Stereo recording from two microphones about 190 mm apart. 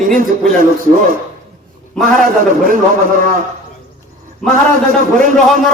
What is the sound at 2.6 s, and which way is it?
Speech, 45° right (ahead or behind).